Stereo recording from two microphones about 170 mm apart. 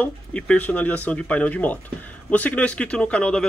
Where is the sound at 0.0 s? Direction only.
5° left (ahead or behind).